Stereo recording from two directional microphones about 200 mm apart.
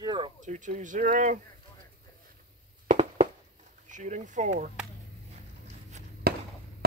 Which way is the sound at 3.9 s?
40° right (ahead or behind).